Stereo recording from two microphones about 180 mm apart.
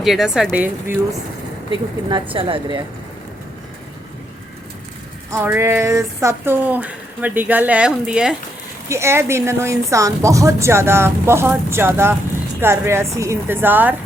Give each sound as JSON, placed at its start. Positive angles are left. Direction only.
{"t": 0.0, "sound": "a woman's voice", "side_deg": 0}
{"t": 2.0, "sound": "speech", "side_deg": -25}
{"t": 5.3, "sound": "speech", "side_deg": -15}
{"t": 8.9, "sound": "speech", "side_deg": -15}